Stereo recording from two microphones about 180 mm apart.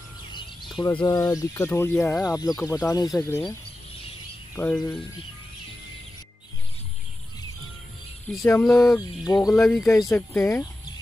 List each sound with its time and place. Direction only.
0.7 s speech: 20° left (ahead or behind)
4.6 s speech: 10° left (ahead or behind)
8.6 s speech: centre (ahead or behind)
8.9 s a sound: 20° left (ahead or behind)
9.5 s speech: 5° left (ahead or behind)
9.8 s speech: 15° left (ahead or behind)